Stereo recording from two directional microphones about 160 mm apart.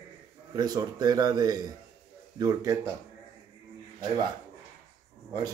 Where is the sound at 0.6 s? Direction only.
25° right (ahead or behind).